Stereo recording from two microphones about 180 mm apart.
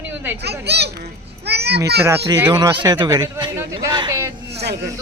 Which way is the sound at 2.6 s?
25° right (ahead or behind).